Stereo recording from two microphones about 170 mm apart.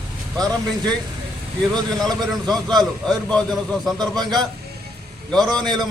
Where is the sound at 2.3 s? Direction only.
Centre (ahead or behind).